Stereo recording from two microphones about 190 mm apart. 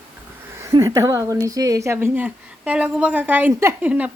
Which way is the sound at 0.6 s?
15° right (ahead or behind).